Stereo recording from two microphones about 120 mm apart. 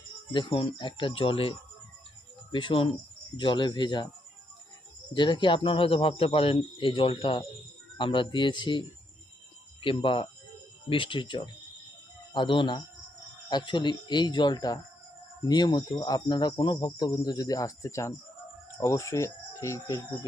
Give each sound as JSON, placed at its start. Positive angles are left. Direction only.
{"t": 0.3, "sound": "speech", "side_deg": 45}
{"t": 3.3, "sound": "cricket", "side_deg": 40}
{"t": 5.1, "sound": "speech", "side_deg": 40}
{"t": 12.3, "sound": "cricket", "side_deg": 45}
{"t": 18.8, "sound": "speech", "side_deg": 25}